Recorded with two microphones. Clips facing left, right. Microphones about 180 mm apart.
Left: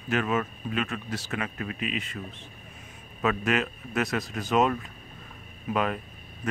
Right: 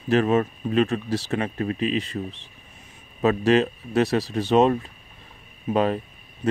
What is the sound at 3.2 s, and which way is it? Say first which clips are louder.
Speech: right 7 dB; 30° right (ahead or behind).